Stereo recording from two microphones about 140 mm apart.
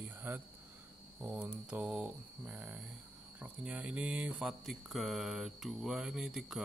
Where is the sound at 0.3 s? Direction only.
15° right (ahead or behind).